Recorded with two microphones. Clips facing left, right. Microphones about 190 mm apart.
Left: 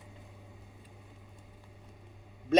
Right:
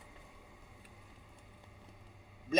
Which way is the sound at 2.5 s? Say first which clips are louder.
Left 7 dB; 65° left (ahead or behind).